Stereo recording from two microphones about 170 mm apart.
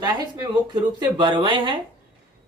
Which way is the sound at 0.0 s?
25° right (ahead or behind).